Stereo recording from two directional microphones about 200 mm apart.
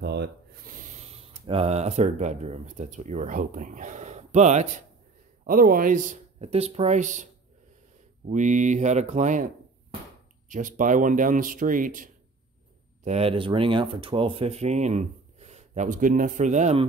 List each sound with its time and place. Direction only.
0.0 s speech: 55° right (ahead or behind); by 7.2 s 35° right (ahead or behind)
8.3 s speech: 40° right (ahead or behind)
13.0 s speech: 30° right (ahead or behind)